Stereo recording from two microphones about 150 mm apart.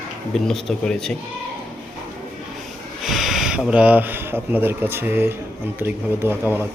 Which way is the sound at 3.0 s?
Centre (ahead or behind).